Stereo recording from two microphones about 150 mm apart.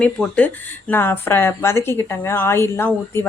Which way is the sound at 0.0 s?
10° left (ahead or behind).